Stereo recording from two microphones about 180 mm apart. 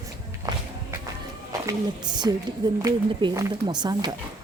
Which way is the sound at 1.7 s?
25° right (ahead or behind).